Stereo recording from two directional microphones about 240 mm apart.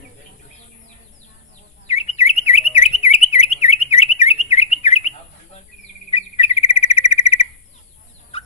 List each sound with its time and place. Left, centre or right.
1.9 s alarm: left
6.1 s cricket: left
8.3 s bird: left